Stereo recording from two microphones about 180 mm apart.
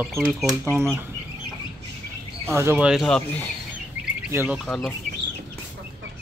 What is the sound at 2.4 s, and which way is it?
Speech, 15° right (ahead or behind).